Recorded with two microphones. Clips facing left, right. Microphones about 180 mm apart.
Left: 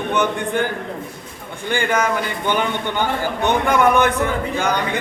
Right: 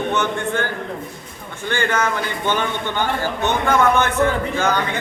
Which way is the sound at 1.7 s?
10° left (ahead or behind).